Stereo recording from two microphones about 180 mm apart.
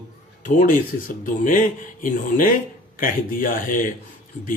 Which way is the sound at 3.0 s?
50° left (ahead or behind).